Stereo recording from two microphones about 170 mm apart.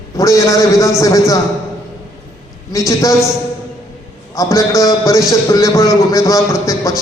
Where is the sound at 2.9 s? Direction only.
20° left (ahead or behind).